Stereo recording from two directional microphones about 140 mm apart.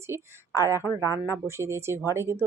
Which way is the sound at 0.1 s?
20° right (ahead or behind).